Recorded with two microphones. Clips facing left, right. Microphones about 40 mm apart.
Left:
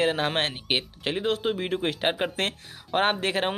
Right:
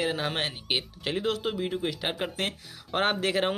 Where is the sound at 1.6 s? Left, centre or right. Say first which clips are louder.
Left 2 dB; left.